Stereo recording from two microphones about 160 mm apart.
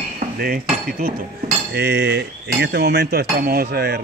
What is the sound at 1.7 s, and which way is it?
Speech, 90° right.